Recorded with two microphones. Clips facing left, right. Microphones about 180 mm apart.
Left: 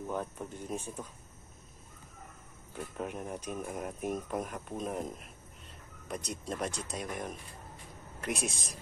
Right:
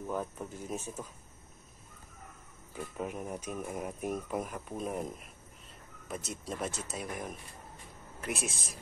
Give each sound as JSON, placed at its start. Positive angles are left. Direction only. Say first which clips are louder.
{"t": 0.0, "sound": "speech", "louder": "even", "side_deg": 0}
{"t": 2.7, "sound": "speech", "louder": "even", "side_deg": -5}